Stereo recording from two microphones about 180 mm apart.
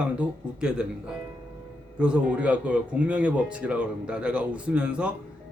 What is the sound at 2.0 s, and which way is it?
Speech, 5° right (ahead or behind).